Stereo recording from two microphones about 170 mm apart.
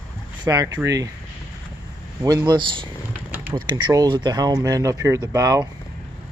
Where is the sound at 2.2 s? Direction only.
25° right (ahead or behind).